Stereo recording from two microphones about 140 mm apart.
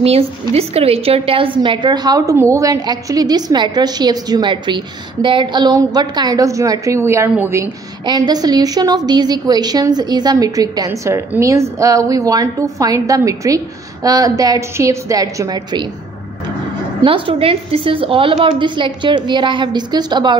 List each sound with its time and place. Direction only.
0.0 s a woman's voice: 45° right (ahead or behind); by 7.7 s 15° right (ahead or behind)
8.0 s a woman's voice: 30° right (ahead or behind)
17.0 s a woman's voice: 40° right (ahead or behind)